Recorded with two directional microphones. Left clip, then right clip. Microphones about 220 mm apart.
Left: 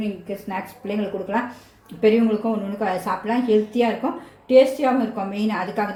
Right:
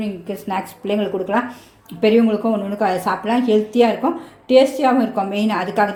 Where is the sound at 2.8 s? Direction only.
35° right (ahead or behind).